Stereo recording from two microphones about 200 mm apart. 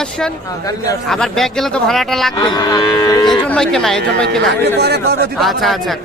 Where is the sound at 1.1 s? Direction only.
Centre (ahead or behind).